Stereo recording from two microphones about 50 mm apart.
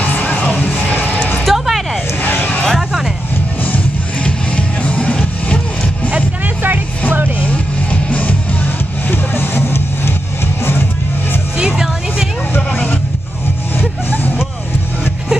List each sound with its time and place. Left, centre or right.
0.0 s music: left
0.9 s a sound: left
1.4 s a sound: centre
2.2 s a sound: left
4.2 s music: left
7.1 s music: right
7.4 s music: left
9.1 s music: left
11.6 s music: centre
13.7 s vehicle: left